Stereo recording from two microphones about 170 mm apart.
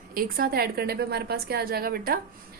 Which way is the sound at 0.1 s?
60° right (ahead or behind).